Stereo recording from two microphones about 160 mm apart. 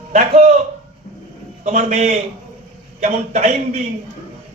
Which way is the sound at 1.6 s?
45° right (ahead or behind).